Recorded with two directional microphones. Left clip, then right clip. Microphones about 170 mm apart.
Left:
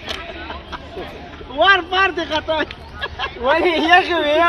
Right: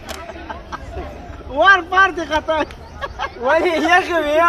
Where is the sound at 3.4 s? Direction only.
45° left (ahead or behind).